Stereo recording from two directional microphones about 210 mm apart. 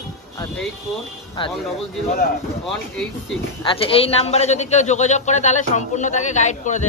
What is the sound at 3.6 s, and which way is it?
A man's voice, 25° left (ahead or behind).